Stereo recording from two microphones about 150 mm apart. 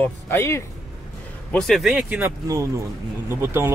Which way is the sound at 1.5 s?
Centre (ahead or behind).